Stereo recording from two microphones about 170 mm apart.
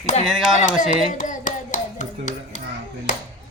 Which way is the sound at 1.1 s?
50° left (ahead or behind).